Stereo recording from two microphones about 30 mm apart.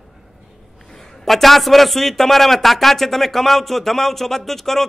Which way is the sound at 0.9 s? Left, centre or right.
Centre.